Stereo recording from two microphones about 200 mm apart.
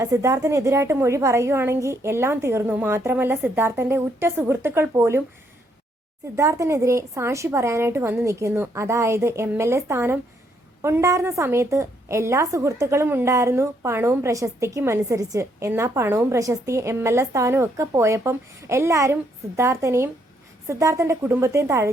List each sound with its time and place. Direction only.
0.0 s a woman's voice: 15° right (ahead or behind)
6.3 s a woman's voice: 15° right (ahead or behind)